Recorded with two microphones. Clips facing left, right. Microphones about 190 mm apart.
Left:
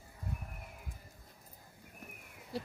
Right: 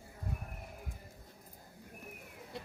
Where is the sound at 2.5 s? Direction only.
35° left (ahead or behind).